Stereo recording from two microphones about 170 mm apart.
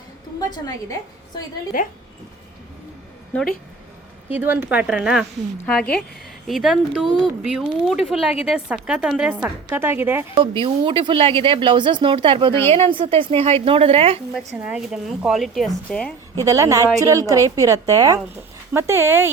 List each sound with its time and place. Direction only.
0.3 s a woman's voice: 25° left (ahead or behind)
1.7 s a woman's voice: 50° left (ahead or behind)
4.3 s speech: 10° right (ahead or behind)
5.6 s speech: 5° left (ahead or behind); by 10.2 s 15° right (ahead or behind)
10.3 s a woman's voice: 30° right (ahead or behind)
14.3 s speech: 5° right (ahead or behind)
16.3 s speech: 20° right (ahead or behind)